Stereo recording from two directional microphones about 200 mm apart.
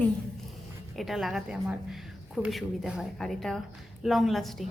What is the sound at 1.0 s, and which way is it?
A woman's voice, centre (ahead or behind).